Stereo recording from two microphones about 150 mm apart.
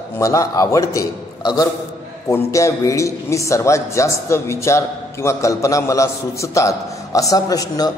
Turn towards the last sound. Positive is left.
turn(degrees=25)  # may be behind; listen again after turning